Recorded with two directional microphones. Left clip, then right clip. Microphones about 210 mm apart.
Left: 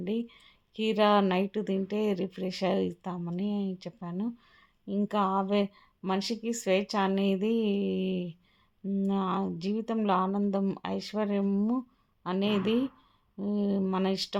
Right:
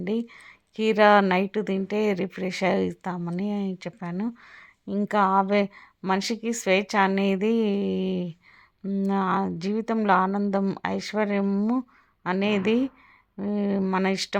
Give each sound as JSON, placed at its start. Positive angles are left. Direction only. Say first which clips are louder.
{"t": 0.0, "sound": "speech", "louder": "right 5 dB", "side_deg": -15}